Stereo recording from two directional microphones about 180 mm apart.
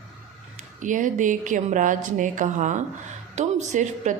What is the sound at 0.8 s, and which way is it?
A woman's voice, 45° right (ahead or behind).